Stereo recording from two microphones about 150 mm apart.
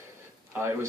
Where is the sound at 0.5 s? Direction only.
15° right (ahead or behind).